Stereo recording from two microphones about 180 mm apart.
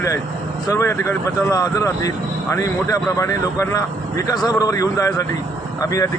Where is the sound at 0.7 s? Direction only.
15° left (ahead or behind).